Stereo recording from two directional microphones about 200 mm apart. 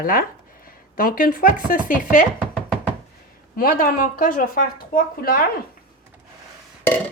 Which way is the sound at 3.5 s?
45° left (ahead or behind).